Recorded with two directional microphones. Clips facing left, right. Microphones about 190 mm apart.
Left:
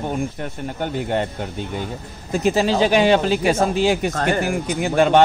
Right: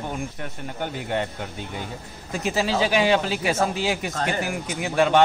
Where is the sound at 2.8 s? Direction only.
30° left (ahead or behind).